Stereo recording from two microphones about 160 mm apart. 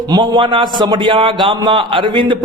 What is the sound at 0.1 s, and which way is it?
A man's voice, 30° right (ahead or behind).